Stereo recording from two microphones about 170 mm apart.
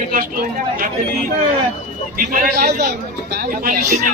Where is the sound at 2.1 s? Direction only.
55° right (ahead or behind).